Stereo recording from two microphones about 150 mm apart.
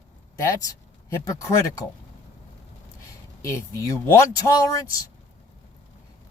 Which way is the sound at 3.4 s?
20° left (ahead or behind).